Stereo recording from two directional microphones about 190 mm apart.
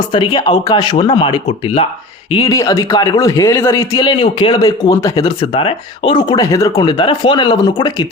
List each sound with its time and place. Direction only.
0.1 s a man's voice: 25° left (ahead or behind)
2.3 s a man's voice: 20° left (ahead or behind)